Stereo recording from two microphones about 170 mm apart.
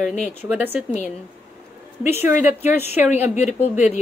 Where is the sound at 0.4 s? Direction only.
10° right (ahead or behind).